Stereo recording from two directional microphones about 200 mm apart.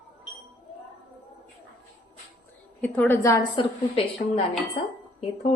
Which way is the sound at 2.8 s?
10° left (ahead or behind).